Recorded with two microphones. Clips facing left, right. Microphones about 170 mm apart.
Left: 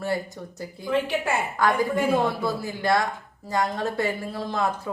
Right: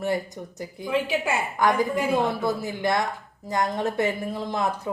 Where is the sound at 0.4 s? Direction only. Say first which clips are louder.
Right 1 dB; 15° right (ahead or behind).